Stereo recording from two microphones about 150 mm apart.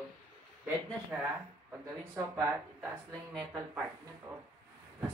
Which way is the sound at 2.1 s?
20° right (ahead or behind).